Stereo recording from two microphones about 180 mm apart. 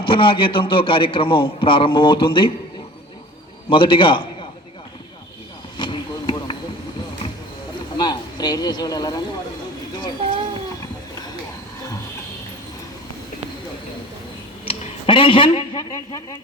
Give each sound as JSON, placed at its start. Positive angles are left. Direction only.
{"t": 0.0, "sound": "a man's voice", "side_deg": 30}
{"t": 3.7, "sound": "a man's voice", "side_deg": 30}
{"t": 5.7, "sound": "a sound", "side_deg": 25}
{"t": 7.9, "sound": "speech", "side_deg": 25}
{"t": 14.6, "sound": "a man's voice", "side_deg": 30}